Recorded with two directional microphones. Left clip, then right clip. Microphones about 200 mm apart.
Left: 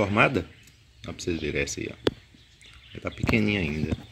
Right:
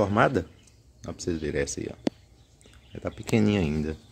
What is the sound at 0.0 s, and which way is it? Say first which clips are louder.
Speech: even; 5° right (ahead or behind).